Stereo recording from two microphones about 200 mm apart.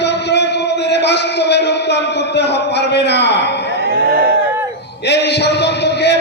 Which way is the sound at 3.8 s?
50° right (ahead or behind).